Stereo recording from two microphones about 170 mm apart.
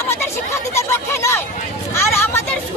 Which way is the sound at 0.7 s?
15° left (ahead or behind).